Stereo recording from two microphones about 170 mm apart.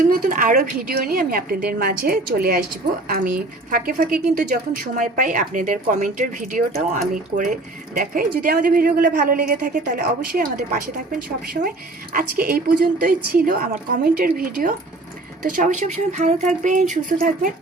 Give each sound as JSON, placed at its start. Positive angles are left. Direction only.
{"t": 0.0, "sound": "a woman's voice", "side_deg": -55}